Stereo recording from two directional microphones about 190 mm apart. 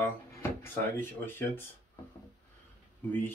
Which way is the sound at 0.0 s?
10° left (ahead or behind).